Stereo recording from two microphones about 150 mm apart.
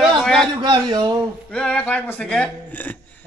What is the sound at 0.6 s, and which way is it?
Speech, 30° right (ahead or behind).